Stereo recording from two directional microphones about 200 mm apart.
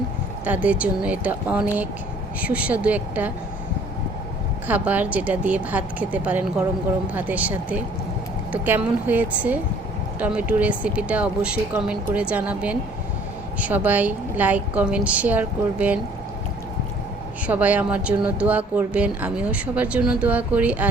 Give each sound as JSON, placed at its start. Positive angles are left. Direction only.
{"t": 0.4, "sound": "speech", "side_deg": -10}
{"t": 4.7, "sound": "speech", "side_deg": -10}
{"t": 17.4, "sound": "speech", "side_deg": -5}